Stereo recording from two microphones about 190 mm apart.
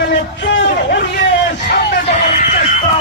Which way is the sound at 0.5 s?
70° left (ahead or behind).